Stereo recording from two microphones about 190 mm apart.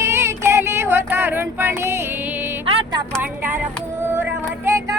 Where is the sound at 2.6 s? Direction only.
20° right (ahead or behind).